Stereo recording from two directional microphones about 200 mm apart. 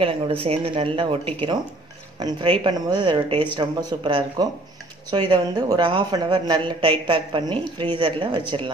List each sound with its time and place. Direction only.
0.0 s a woman's voice: 25° right (ahead or behind)